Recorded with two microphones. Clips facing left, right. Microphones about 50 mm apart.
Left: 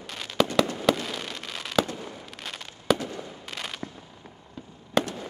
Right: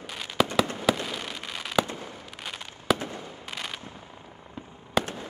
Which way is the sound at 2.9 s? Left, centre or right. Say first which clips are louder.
Left 1 dB; right.